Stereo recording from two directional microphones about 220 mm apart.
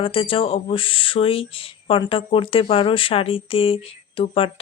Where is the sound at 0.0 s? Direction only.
25° left (ahead or behind).